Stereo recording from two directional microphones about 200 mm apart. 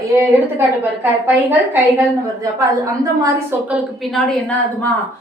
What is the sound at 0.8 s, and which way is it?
A woman's voice, 10° right (ahead or behind).